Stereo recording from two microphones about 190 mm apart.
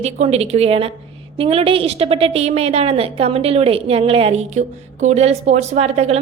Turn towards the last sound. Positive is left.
turn(degrees=-35)  # may be behind; listen again after turning